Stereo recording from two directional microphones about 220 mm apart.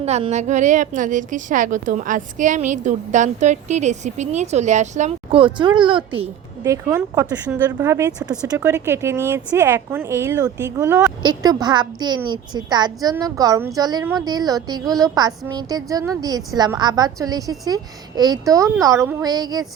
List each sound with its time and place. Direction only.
0.0 s a woman's voice: 30° right (ahead or behind)
6.6 s a woman's voice: 15° right (ahead or behind)